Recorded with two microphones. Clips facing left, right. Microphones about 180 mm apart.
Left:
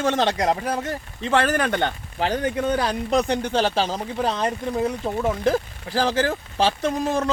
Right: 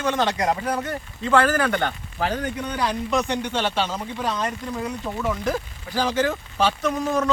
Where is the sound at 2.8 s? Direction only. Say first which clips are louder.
Left 2 dB; 35° left (ahead or behind).